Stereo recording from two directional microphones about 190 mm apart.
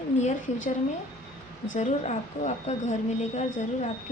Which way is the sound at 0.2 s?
40° left (ahead or behind).